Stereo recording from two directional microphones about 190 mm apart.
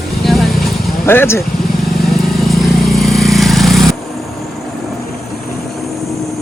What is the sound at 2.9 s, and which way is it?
Vehicle, centre (ahead or behind).